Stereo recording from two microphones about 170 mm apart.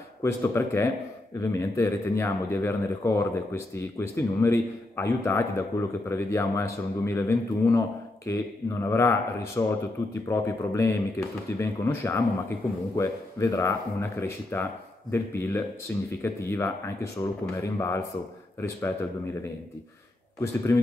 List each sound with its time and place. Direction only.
0.2 s speech: 15° left (ahead or behind)
20.3 s speech: 15° left (ahead or behind)